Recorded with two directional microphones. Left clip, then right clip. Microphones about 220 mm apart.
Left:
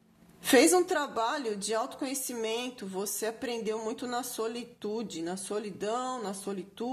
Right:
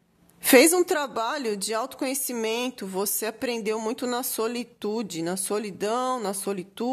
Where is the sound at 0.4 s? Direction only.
40° right (ahead or behind).